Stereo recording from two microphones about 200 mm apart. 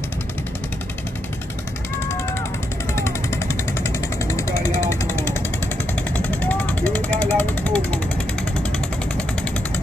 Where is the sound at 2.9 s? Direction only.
15° left (ahead or behind).